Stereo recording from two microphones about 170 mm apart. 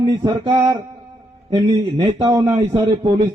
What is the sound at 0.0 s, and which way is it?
A man's voice, 25° right (ahead or behind).